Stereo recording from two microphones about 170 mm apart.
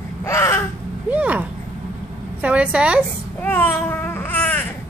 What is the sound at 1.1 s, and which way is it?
A woman's voice, 10° right (ahead or behind).